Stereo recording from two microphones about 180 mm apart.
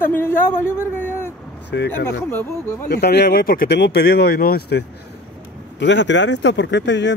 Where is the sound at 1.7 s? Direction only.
70° left (ahead or behind).